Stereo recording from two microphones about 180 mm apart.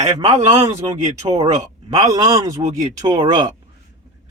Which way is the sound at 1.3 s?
40° right (ahead or behind).